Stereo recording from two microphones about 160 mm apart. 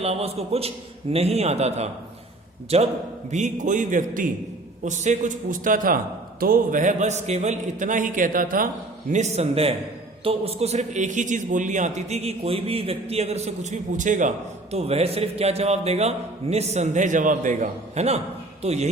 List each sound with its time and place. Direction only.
0.0 s a man's voice: 40° right (ahead or behind)